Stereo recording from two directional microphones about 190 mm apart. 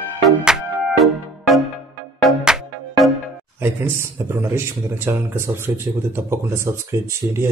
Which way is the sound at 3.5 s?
10° right (ahead or behind).